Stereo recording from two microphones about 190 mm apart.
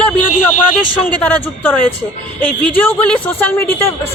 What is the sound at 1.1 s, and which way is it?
Speech, 5° left (ahead or behind).